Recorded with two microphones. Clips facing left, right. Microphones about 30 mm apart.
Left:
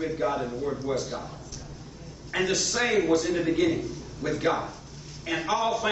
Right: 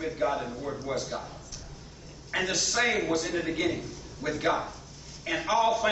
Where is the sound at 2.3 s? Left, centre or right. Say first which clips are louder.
Left 2 dB; centre.